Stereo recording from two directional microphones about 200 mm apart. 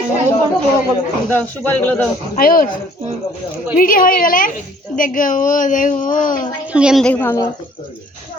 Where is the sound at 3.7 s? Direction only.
45° left (ahead or behind).